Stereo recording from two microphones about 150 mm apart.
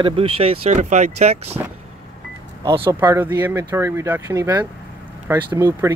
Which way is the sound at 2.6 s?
35° right (ahead or behind).